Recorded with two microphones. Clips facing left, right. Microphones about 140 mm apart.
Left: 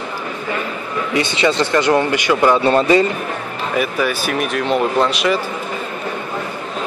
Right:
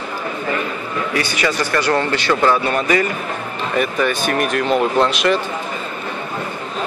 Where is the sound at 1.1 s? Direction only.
25° left (ahead or behind).